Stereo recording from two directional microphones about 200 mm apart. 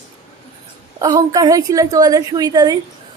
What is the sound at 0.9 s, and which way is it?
A woman's voice, 20° right (ahead or behind).